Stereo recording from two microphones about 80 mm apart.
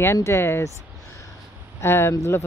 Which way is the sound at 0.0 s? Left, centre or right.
Left.